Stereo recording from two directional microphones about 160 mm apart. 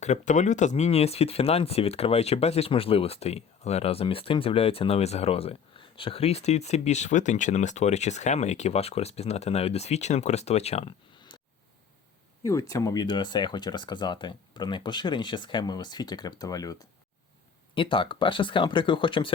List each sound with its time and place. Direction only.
0.0 s speech: 45° left (ahead or behind)
12.4 s speech: 20° left (ahead or behind)
17.7 s speech: 30° left (ahead or behind)